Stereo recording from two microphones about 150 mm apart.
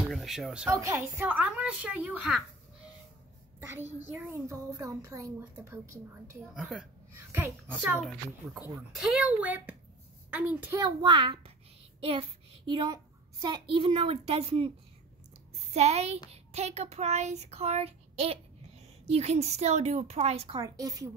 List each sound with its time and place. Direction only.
0.1 s speech: centre (ahead or behind)
0.7 s a woman's voice: 20° right (ahead or behind)
3.6 s a child's voice: 15° right (ahead or behind)
6.5 s speech: 5° right (ahead or behind)
7.2 s a woman's voice: 15° right (ahead or behind)
9.0 s a woman's voice: 5° right (ahead or behind)
10.8 s a child's voice: 30° right (ahead or behind)
15.7 s speech: 45° right (ahead or behind)
20.5 s a child's voice: 25° right (ahead or behind)